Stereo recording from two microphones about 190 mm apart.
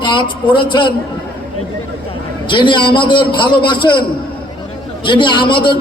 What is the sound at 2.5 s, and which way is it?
A man's voice, 25° left (ahead or behind).